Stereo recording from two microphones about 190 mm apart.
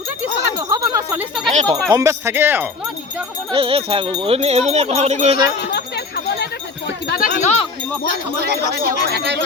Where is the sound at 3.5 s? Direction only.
30° right (ahead or behind).